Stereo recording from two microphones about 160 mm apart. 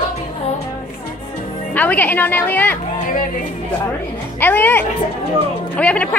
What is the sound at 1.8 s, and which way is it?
A woman's voice, 10° left (ahead or behind).